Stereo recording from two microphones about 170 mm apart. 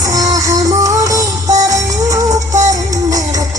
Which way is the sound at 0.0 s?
20° right (ahead or behind).